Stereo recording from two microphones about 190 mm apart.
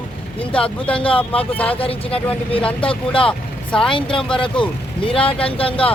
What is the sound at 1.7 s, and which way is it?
Speech, 30° left (ahead or behind).